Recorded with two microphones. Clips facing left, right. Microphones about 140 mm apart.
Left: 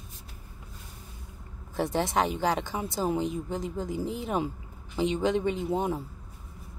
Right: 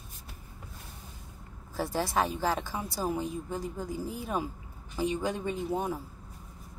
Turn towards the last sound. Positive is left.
turn(degrees=20)  # may be behind; listen again after turning